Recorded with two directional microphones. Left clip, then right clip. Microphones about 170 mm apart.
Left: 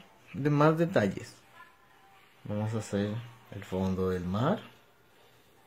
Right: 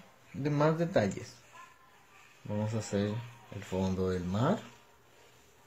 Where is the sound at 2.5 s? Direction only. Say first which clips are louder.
Left 1 dB; 20° left (ahead or behind).